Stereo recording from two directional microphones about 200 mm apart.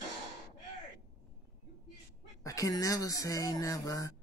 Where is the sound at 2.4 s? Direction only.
15° left (ahead or behind).